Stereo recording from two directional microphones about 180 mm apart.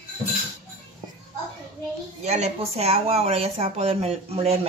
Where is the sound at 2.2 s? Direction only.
35° right (ahead or behind).